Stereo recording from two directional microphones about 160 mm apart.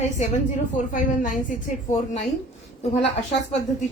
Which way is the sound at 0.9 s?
55° left (ahead or behind).